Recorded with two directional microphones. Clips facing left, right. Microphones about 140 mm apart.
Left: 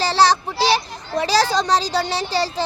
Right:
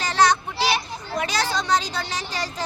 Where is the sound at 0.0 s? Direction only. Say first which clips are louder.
Left 3 dB; 35° left (ahead or behind).